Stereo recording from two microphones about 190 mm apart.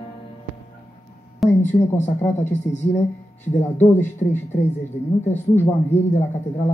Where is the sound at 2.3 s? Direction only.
35° left (ahead or behind).